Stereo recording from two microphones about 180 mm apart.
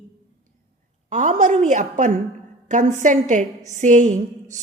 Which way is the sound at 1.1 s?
45° right (ahead or behind).